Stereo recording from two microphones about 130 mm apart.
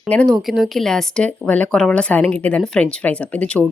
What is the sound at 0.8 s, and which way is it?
Speech, 5° left (ahead or behind).